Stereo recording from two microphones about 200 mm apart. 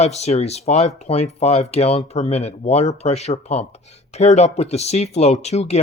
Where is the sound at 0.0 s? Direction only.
35° left (ahead or behind).